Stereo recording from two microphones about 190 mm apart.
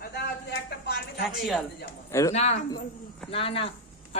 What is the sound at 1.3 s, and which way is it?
Speech, centre (ahead or behind).